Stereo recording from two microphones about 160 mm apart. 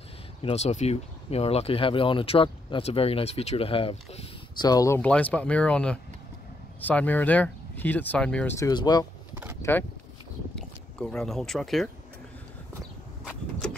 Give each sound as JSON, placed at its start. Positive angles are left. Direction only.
{"t": 0.4, "sound": "speech", "side_deg": 40}
{"t": 4.6, "sound": "speech", "side_deg": 20}
{"t": 5.0, "sound": "speech", "side_deg": 10}
{"t": 8.5, "sound": "speech", "side_deg": 25}
{"t": 9.3, "sound": "a sound", "side_deg": -10}
{"t": 9.6, "sound": "speech", "side_deg": 15}